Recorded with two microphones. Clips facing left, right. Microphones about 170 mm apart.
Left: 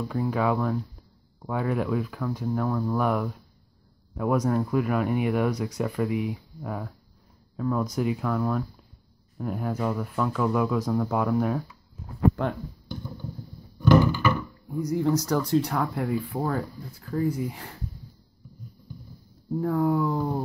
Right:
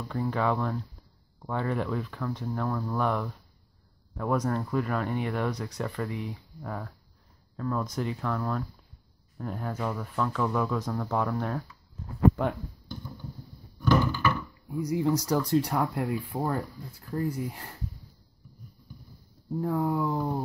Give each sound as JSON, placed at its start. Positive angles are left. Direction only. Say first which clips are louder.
{"t": 0.1, "sound": "speech", "louder": "left 1 dB", "side_deg": 10}
{"t": 13.7, "sound": "music", "louder": "left 5 dB", "side_deg": 10}
{"t": 14.7, "sound": "speech", "louder": "left 2 dB", "side_deg": -10}
{"t": 19.5, "sound": "speech", "louder": "left 4 dB", "side_deg": -5}